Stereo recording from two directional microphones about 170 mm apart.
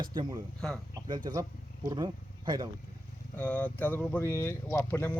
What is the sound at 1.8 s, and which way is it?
Speech, 25° right (ahead or behind).